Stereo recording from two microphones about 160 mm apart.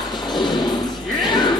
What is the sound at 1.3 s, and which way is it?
Music, 25° left (ahead or behind).